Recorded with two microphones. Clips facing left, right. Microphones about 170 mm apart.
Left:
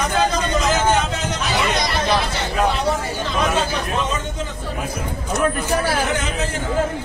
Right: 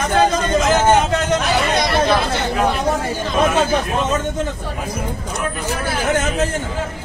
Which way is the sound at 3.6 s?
50° right (ahead or behind).